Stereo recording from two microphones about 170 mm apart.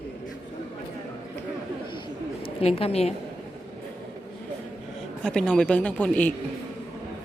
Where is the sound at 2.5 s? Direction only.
35° left (ahead or behind).